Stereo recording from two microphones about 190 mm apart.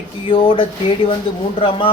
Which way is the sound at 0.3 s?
25° left (ahead or behind).